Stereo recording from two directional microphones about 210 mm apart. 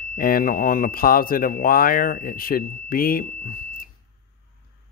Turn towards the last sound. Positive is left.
turn(degrees=40)  # may be behind; listen again after turning